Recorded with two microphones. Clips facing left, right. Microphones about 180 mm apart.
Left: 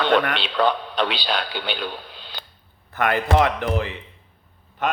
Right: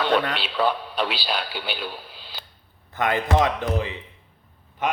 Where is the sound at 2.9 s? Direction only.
20° right (ahead or behind).